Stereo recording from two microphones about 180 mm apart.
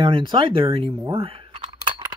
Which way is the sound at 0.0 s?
25° right (ahead or behind).